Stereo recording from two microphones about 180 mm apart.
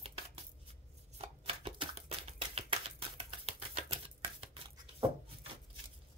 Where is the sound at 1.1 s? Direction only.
35° right (ahead or behind).